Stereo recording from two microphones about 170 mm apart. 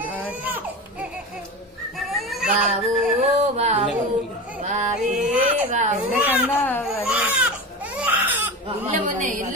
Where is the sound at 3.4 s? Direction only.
40° right (ahead or behind).